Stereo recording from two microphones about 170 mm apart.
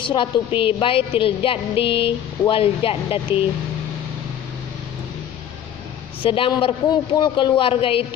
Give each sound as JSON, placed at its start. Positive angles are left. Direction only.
{"t": 0.0, "sound": "a woman's voice", "side_deg": 30}
{"t": 6.2, "sound": "a woman's voice", "side_deg": 30}